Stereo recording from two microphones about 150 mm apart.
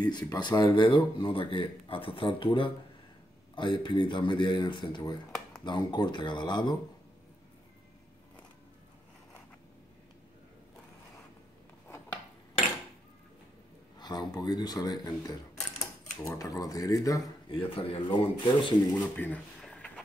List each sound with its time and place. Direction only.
0.0 s speech: 25° left (ahead or behind)
13.9 s speech: 30° left (ahead or behind)
17.5 s speech: 35° left (ahead or behind)
19.1 s a sound: 10° left (ahead or behind)